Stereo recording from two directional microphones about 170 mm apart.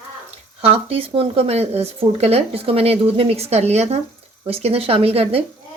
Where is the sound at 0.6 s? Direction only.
35° right (ahead or behind).